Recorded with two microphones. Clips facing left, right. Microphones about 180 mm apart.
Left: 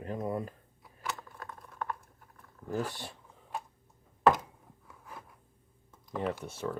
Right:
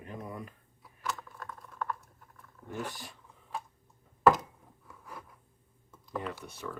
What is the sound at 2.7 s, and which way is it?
Speech, 35° left (ahead or behind).